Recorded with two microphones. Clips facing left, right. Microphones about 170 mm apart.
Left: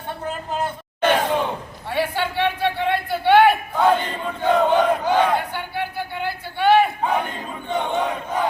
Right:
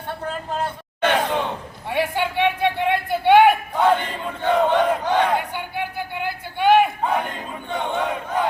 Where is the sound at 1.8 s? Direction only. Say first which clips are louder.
Right 1 dB; 15° right (ahead or behind).